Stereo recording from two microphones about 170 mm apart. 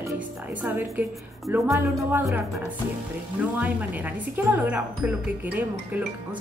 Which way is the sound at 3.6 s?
10° right (ahead or behind).